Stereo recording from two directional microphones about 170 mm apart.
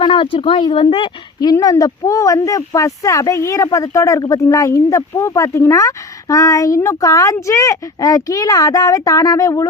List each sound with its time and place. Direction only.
0.0 s speech: 30° left (ahead or behind)